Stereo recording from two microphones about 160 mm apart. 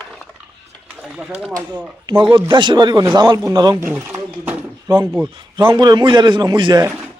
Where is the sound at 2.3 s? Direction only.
30° right (ahead or behind).